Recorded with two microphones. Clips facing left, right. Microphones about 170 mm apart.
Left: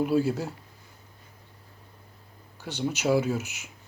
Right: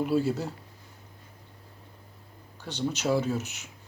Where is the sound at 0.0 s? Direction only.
Centre (ahead or behind).